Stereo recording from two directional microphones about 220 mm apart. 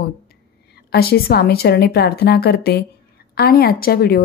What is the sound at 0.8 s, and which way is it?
Speech, 45° left (ahead or behind).